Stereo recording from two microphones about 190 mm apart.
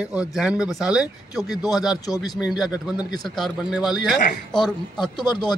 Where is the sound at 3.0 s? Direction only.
20° left (ahead or behind).